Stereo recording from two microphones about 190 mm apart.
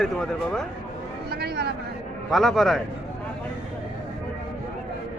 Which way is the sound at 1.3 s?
55° right (ahead or behind).